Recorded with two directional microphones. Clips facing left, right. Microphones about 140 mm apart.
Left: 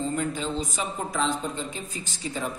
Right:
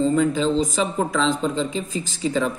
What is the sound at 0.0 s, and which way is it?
Speech, 90° right.